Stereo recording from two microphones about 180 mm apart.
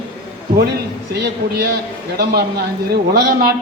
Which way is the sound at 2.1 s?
60° right (ahead or behind).